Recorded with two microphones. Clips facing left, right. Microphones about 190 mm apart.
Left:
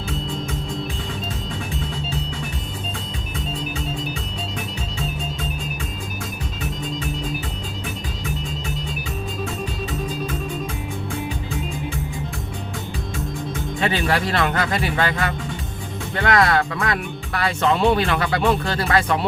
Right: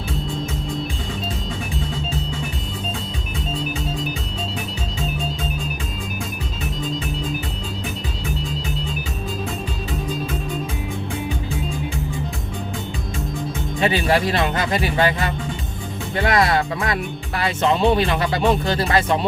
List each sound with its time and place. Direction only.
13.7 s speech: 20° right (ahead or behind)